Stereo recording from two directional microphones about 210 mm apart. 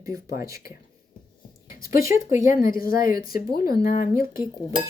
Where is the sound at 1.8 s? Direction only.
45° left (ahead or behind).